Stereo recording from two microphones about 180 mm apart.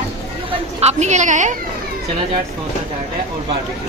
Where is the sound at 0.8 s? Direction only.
40° right (ahead or behind).